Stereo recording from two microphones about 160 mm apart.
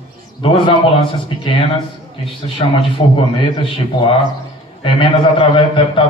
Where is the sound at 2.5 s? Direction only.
35° left (ahead or behind).